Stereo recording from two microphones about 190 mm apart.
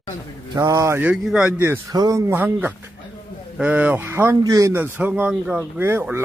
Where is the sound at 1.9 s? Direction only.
20° right (ahead or behind).